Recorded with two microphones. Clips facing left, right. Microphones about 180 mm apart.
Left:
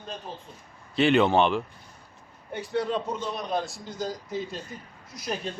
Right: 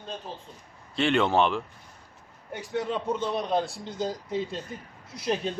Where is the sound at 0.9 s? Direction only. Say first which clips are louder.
Left 3 dB; 5° left (ahead or behind).